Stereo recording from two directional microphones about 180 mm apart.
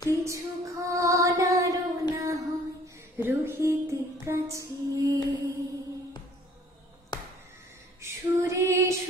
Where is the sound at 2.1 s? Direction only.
15° right (ahead or behind).